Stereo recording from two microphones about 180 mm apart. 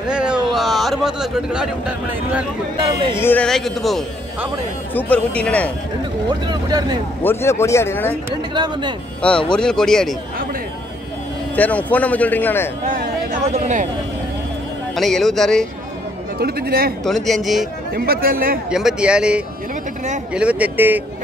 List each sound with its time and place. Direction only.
0.1 s speech: 5° right (ahead or behind)
2.8 s speech: 30° right (ahead or behind)
3.2 s speech: 10° left (ahead or behind)
6.5 s speech: 25° right (ahead or behind)
7.2 s speech: 15° left (ahead or behind)
8.5 s speech: 25° right (ahead or behind)
9.5 s speech: 5° left (ahead or behind)
11.5 s speech: 10° left (ahead or behind)
12.8 s speech: 45° right (ahead or behind)
15.0 s speech: centre (ahead or behind)
16.3 s speech: 60° right (ahead or behind)
17.0 s speech: centre (ahead or behind)
17.9 s speech: 55° right (ahead or behind)
18.7 s speech: 5° right (ahead or behind)